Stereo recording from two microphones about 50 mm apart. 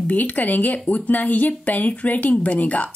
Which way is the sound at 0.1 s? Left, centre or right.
Left.